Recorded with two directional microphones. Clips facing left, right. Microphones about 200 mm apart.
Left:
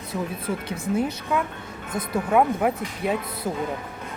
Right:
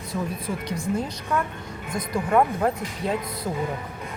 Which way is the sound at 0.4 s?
5° left (ahead or behind).